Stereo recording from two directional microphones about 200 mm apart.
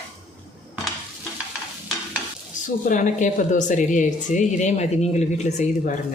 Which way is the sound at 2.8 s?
40° left (ahead or behind).